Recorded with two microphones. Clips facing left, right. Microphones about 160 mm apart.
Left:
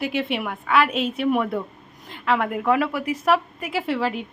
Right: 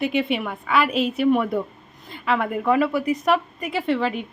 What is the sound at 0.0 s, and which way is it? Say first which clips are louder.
A woman's voice: right 2 dB; centre (ahead or behind).